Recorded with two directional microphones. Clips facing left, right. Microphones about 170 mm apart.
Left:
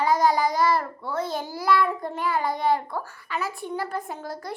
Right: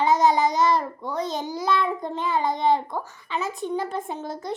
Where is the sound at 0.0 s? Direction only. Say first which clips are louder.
Right 2 dB; 20° right (ahead or behind).